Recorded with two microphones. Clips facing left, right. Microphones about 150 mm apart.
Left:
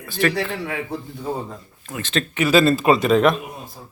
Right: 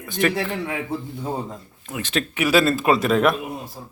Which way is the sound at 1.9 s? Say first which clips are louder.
Left 1 dB; 10° right (ahead or behind).